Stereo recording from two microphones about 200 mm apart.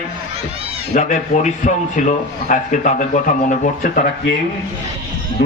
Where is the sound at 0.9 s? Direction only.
40° left (ahead or behind).